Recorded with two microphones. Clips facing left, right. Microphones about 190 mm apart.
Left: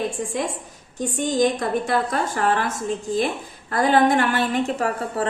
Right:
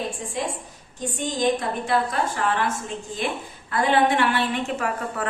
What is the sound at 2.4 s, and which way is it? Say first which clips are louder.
Speech: left 5 dB; 45° left (ahead or behind).